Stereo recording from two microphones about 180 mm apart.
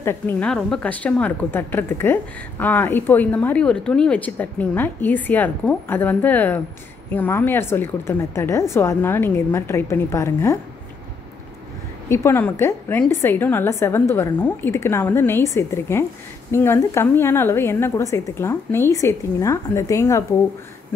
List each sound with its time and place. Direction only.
0.0 s speech: 15° left (ahead or behind)
12.1 s speech: 15° left (ahead or behind)